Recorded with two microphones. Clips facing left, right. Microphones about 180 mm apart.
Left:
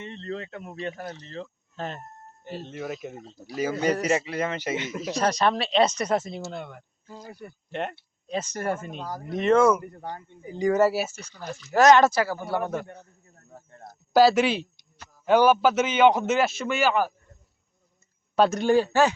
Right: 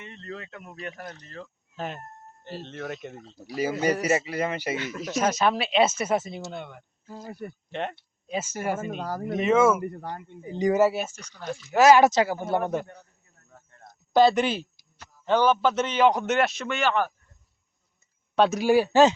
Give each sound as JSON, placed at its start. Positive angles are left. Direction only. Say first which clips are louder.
{"t": 0.0, "sound": "speech", "louder": "left 5 dB", "side_deg": 30}
{"t": 1.7, "sound": "a man's voice", "louder": "right 1 dB", "side_deg": -5}
{"t": 3.6, "sound": "a man's voice", "louder": "even", "side_deg": -10}
{"t": 4.8, "sound": "speech", "louder": "even", "side_deg": 20}
{"t": 5.1, "sound": "speech", "louder": "even", "side_deg": -5}
{"t": 10.5, "sound": "speech", "louder": "even", "side_deg": -20}
{"t": 10.8, "sound": "speech", "louder": "even", "side_deg": 0}
{"t": 12.1, "sound": "speech", "louder": "right 2 dB", "side_deg": -20}
{"t": 13.5, "sound": "a sound", "louder": "left 6 dB", "side_deg": 30}
{"t": 14.1, "sound": "speech", "louder": "left 1 dB", "side_deg": 5}
{"t": 15.2, "sound": "speech", "louder": "left 3 dB", "side_deg": 10}
{"t": 18.3, "sound": "speech", "louder": "even", "side_deg": 0}